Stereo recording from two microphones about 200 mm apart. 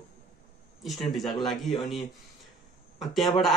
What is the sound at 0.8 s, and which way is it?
A man's voice, centre (ahead or behind).